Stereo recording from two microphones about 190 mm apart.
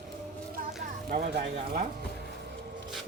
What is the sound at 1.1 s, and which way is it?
Speech, 45° right (ahead or behind).